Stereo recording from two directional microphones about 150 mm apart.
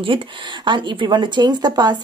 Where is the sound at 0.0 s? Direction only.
35° right (ahead or behind).